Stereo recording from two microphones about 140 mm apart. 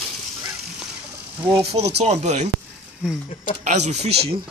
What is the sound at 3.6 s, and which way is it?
Speech, 55° right (ahead or behind).